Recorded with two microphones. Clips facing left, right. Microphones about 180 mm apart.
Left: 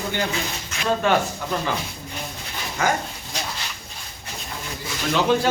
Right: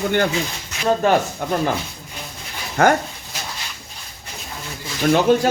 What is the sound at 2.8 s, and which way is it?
Speech, 60° right (ahead or behind).